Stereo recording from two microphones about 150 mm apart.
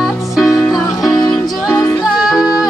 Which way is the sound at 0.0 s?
Centre (ahead or behind).